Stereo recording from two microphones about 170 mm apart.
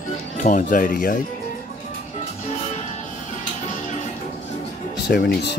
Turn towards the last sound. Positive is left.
turn(degrees=70)  # may be behind; listen again after turning